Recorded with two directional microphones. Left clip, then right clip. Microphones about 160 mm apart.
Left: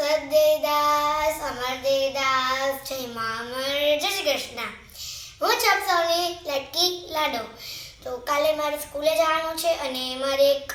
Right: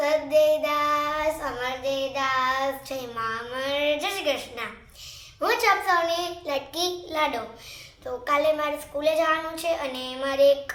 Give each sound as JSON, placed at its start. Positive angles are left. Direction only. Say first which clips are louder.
{"t": 0.0, "sound": "child singing", "louder": "left 1 dB", "side_deg": -15}
{"t": 4.0, "sound": "a sound", "louder": "left 2 dB", "side_deg": -15}
{"t": 5.4, "sound": "a child's voice", "louder": "left 1 dB", "side_deg": -15}
{"t": 8.0, "sound": "a child's voice", "louder": "even", "side_deg": -5}